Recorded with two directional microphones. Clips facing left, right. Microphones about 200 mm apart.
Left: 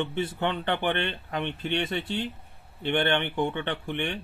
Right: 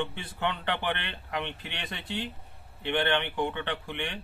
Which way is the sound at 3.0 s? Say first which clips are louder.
Left 1 dB; 25° left (ahead or behind).